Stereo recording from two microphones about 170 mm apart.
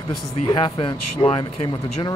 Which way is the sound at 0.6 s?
30° left (ahead or behind).